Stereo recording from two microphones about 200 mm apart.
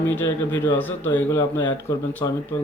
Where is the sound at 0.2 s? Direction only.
10° left (ahead or behind).